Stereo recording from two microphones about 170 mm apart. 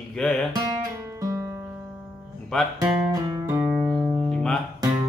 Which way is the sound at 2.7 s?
20° right (ahead or behind).